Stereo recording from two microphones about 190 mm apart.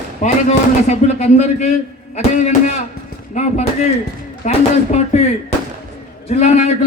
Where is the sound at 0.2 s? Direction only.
35° left (ahead or behind).